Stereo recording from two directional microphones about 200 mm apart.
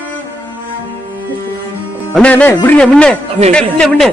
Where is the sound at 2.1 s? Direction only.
5° left (ahead or behind).